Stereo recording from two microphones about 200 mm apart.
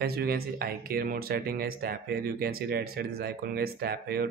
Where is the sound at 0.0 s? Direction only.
50° right (ahead or behind).